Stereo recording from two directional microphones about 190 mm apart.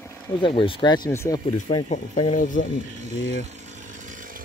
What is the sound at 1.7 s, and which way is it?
Speech, 30° left (ahead or behind).